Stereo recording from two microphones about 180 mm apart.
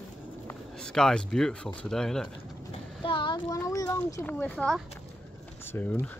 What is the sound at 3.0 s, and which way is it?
A child's voice, 25° left (ahead or behind).